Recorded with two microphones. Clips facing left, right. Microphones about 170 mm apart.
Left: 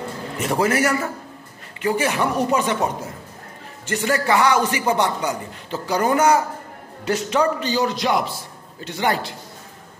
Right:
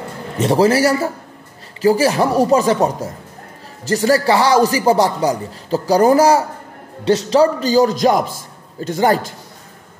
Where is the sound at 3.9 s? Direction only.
35° right (ahead or behind).